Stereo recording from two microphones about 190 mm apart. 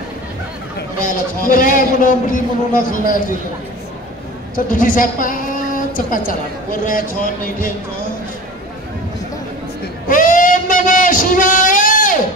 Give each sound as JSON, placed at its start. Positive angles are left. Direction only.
{"t": 1.0, "sound": "a woman's voice", "side_deg": 45}
{"t": 4.6, "sound": "a woman's voice", "side_deg": 45}
{"t": 10.0, "sound": "a sound", "side_deg": 45}